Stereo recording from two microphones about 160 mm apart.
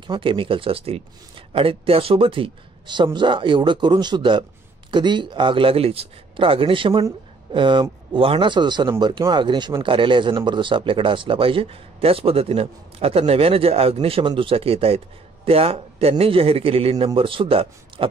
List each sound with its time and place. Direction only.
0.0 s a man's voice: 30° right (ahead or behind)